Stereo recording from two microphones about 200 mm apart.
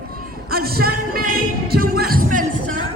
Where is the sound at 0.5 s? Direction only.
50° right (ahead or behind).